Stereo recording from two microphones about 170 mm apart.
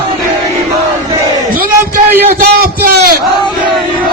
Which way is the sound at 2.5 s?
60° right (ahead or behind).